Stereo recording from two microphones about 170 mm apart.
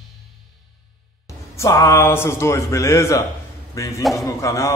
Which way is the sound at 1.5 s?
20° left (ahead or behind).